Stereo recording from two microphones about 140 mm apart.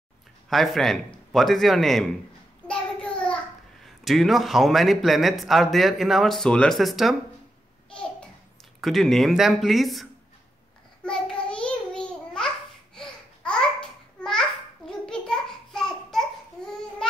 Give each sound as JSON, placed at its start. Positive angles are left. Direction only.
{"t": 0.5, "sound": "a man's voice", "side_deg": 0}
{"t": 2.7, "sound": "child singing", "side_deg": 10}
{"t": 3.8, "sound": "a man's voice", "side_deg": 0}
{"t": 7.9, "sound": "babbling", "side_deg": 5}
{"t": 8.8, "sound": "a man's voice", "side_deg": 0}
{"t": 11.1, "sound": "a sound", "side_deg": 5}
{"t": 12.9, "sound": "babbling", "side_deg": 5}